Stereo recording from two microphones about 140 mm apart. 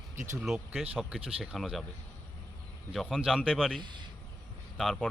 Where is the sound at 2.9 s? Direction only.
Centre (ahead or behind).